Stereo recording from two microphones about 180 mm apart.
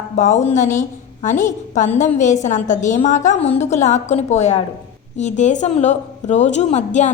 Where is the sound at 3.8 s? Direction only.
40° left (ahead or behind).